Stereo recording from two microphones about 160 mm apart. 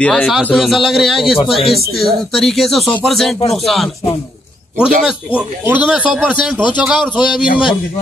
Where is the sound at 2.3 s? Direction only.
Centre (ahead or behind).